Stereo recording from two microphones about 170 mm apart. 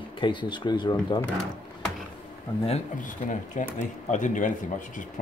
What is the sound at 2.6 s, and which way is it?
Speech, 45° left (ahead or behind).